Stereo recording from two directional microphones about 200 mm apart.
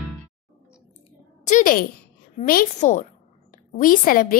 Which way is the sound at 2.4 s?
45° left (ahead or behind).